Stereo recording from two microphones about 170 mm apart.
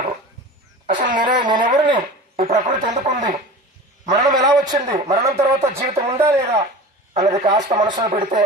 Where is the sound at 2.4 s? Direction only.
45° right (ahead or behind).